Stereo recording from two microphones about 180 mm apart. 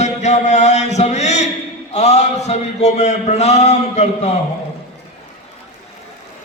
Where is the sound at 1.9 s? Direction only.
40° left (ahead or behind).